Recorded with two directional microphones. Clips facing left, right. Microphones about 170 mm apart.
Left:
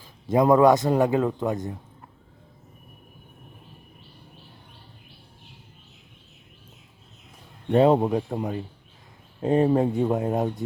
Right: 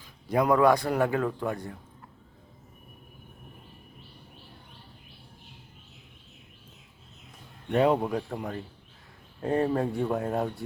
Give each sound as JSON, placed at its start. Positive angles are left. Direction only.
{"t": 0.3, "sound": "a man's voice", "side_deg": 25}
{"t": 7.7, "sound": "a man's voice", "side_deg": 30}